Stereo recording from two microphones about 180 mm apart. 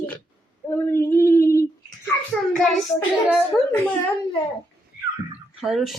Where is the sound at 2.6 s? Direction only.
Centre (ahead or behind).